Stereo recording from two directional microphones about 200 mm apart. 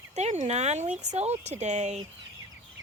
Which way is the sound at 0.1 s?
35° right (ahead or behind).